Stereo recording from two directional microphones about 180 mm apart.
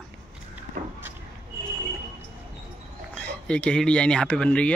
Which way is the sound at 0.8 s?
50° right (ahead or behind).